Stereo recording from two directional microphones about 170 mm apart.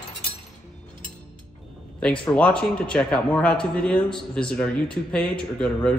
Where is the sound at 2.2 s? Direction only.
5° left (ahead or behind).